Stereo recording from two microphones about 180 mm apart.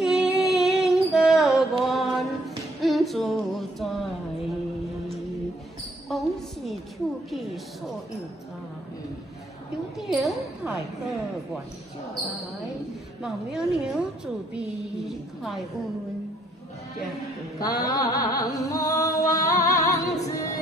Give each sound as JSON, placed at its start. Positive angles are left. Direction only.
{"t": 0.0, "sound": "music", "side_deg": -5}
{"t": 6.0, "sound": "basketball bounce", "side_deg": 0}
{"t": 9.9, "sound": "a woman's voice", "side_deg": 0}
{"t": 13.2, "sound": "a woman's voice", "side_deg": 0}
{"t": 17.6, "sound": "music", "side_deg": 20}